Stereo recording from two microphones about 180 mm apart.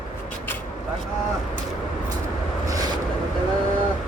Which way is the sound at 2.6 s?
20° right (ahead or behind).